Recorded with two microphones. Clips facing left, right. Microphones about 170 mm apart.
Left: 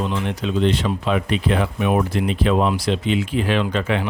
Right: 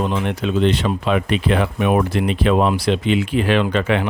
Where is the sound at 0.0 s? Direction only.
55° right (ahead or behind).